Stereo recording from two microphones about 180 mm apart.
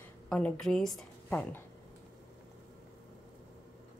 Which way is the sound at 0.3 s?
5° left (ahead or behind).